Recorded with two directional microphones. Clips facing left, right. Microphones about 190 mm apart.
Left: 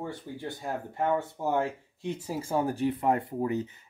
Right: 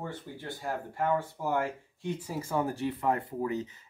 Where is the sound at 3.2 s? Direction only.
15° left (ahead or behind).